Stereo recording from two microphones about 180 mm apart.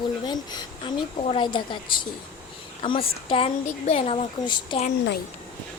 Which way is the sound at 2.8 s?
30° left (ahead or behind).